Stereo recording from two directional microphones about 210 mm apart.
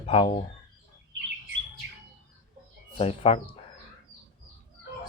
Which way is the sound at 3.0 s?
30° left (ahead or behind).